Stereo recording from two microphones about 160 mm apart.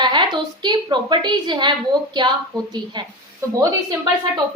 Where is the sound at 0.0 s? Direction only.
30° right (ahead or behind).